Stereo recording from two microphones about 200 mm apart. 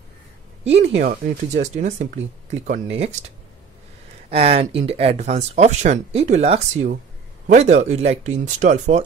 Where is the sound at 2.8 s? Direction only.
30° right (ahead or behind).